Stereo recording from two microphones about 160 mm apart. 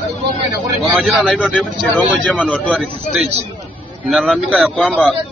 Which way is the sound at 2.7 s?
5° right (ahead or behind).